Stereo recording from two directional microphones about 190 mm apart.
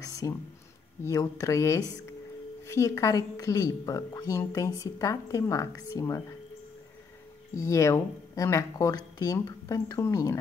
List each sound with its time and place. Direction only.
0.0 s a sound: 15° left (ahead or behind)
1.0 s a woman's voice: 15° left (ahead or behind)
7.5 s a woman's voice: 15° left (ahead or behind)